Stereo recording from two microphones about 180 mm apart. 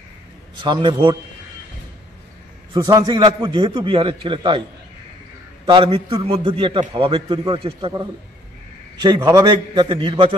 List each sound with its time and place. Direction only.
0.6 s a man's voice: 25° right (ahead or behind)
2.7 s a man's voice: 20° right (ahead or behind)
5.7 s a man's voice: 30° right (ahead or behind)